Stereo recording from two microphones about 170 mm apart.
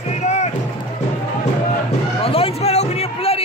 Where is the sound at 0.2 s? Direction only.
40° left (ahead or behind).